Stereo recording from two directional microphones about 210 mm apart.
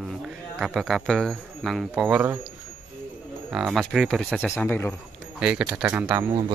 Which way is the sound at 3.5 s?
Centre (ahead or behind).